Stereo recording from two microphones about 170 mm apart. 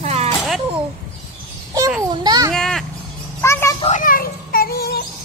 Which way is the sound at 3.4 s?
15° left (ahead or behind).